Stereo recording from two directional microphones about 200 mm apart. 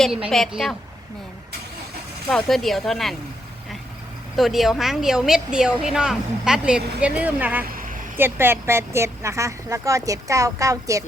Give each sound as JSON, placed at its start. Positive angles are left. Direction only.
{"t": 0.3, "sound": "a woman's voice", "side_deg": 0}
{"t": 2.3, "sound": "a woman's voice", "side_deg": 0}
{"t": 4.4, "sound": "a woman's voice", "side_deg": 0}
{"t": 7.6, "sound": "a sound", "side_deg": -45}
{"t": 8.1, "sound": "a woman's voice", "side_deg": -10}